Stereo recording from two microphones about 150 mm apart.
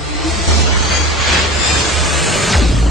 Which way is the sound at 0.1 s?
Centre (ahead or behind).